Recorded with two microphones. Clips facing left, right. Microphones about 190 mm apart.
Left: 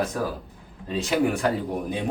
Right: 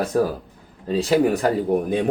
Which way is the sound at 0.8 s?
35° right (ahead or behind).